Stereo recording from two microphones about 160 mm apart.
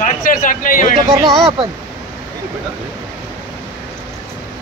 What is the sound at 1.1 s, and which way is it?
Speech, 25° right (ahead or behind).